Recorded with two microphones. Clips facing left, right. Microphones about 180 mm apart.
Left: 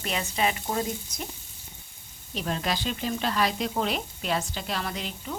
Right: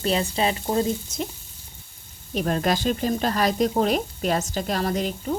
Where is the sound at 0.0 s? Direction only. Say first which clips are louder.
Right 5 dB; 35° right (ahead or behind).